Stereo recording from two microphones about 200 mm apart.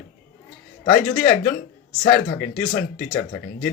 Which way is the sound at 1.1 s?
45° left (ahead or behind).